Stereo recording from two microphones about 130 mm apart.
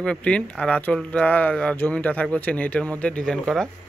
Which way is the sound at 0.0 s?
10° left (ahead or behind).